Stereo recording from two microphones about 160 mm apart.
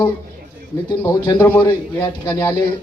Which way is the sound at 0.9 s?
25° left (ahead or behind).